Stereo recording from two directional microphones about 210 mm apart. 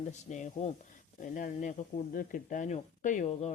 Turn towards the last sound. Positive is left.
turn(degrees=35)  # may be behind; listen again after turning